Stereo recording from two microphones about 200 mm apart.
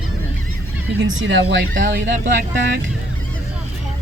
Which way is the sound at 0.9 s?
65° right (ahead or behind).